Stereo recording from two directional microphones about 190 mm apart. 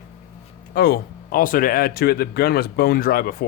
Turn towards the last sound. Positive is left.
turn(degrees=50)  # may be behind; listen again after turning